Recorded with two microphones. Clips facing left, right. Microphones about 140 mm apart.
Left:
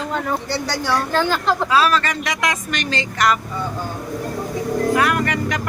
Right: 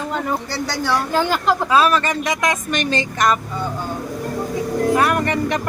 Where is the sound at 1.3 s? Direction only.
15° right (ahead or behind).